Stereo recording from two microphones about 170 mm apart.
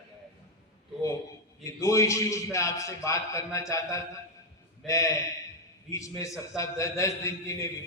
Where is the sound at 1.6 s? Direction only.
15° left (ahead or behind).